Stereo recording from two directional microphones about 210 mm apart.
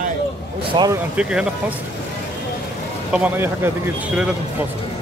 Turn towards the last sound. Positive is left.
turn(degrees=-10)  # may be behind; listen again after turning